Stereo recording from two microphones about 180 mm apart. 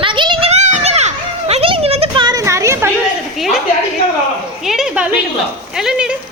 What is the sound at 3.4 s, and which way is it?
Speech, centre (ahead or behind).